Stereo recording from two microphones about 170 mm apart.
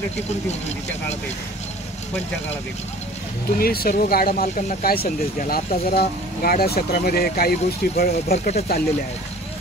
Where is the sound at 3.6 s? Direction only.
60° left (ahead or behind).